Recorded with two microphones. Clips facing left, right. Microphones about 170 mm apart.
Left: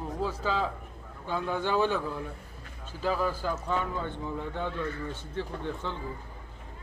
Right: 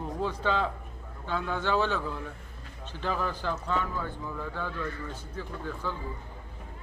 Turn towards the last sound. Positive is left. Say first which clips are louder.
# left 1 dB
turn(degrees=25)  # may be behind; listen again after turning